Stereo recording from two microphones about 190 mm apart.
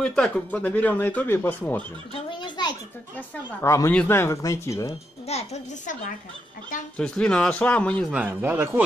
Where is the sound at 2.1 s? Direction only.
25° left (ahead or behind).